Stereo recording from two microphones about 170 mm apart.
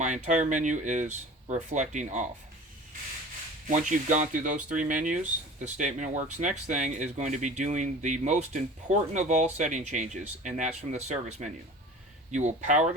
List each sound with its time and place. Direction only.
0.0 s speech: 45° right (ahead or behind)
3.7 s speech: 45° right (ahead or behind)